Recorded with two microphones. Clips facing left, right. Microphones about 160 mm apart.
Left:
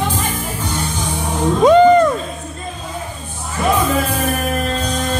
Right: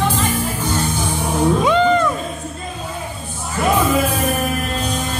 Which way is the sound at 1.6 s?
45° left (ahead or behind).